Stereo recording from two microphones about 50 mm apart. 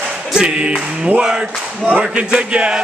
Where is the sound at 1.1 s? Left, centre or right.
Centre.